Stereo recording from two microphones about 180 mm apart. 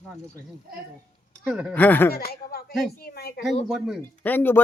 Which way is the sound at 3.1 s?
60° left (ahead or behind).